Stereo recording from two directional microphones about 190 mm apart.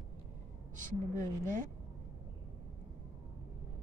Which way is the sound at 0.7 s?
45° right (ahead or behind).